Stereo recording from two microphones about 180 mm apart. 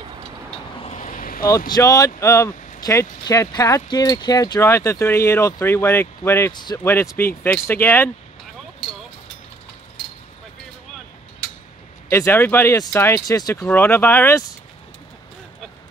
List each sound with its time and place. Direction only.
0.8 s vehicle: 40° left (ahead or behind)
1.7 s speech: 20° left (ahead or behind)
6.5 s speech: 25° left (ahead or behind)
6.8 s speech: 15° left (ahead or behind)
12.1 s speech: 10° left (ahead or behind)